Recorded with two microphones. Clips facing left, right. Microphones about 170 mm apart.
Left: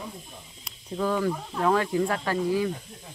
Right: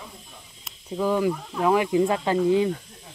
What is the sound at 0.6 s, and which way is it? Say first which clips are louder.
Snake: right 2 dB; 10° right (ahead or behind).